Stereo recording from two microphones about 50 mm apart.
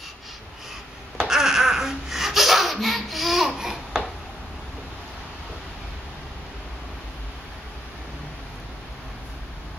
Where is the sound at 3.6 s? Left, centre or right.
Centre.